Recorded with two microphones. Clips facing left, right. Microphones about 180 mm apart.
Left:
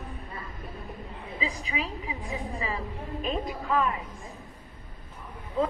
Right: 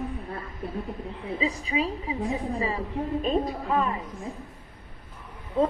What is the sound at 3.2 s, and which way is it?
Speech, 30° right (ahead or behind).